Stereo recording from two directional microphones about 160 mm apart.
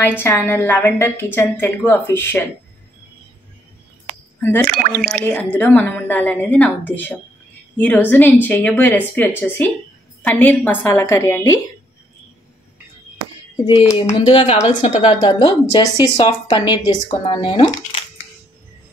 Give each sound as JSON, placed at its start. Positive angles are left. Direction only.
{"t": 0.0, "sound": "a woman's voice", "side_deg": 15}
{"t": 4.4, "sound": "speech", "side_deg": 15}
{"t": 4.9, "sound": "speech", "side_deg": -10}
{"t": 5.2, "sound": "a woman's voice", "side_deg": 10}
{"t": 13.7, "sound": "a woman's voice", "side_deg": 35}
{"t": 15.0, "sound": "a woman's voice", "side_deg": 30}